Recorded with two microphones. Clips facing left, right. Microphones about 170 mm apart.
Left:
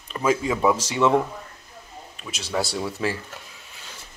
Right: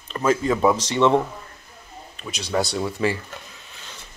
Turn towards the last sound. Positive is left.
turn(degrees=5)  # may be behind; listen again after turning